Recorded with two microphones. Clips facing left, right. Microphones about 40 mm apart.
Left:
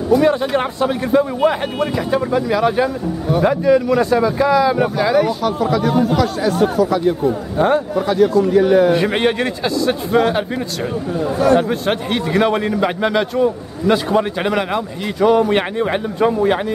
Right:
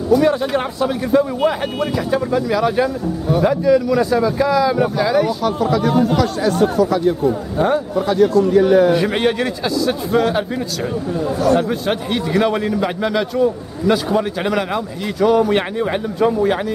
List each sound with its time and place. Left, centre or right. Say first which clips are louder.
0.1 s a man's voice: left 1 dB; centre
7.6 s a man's voice: left 2 dB; centre
8.1 s a man's voice: even; centre
11.3 s a man's voice: left 2 dB; left
11.8 s a man's voice: left 1 dB; centre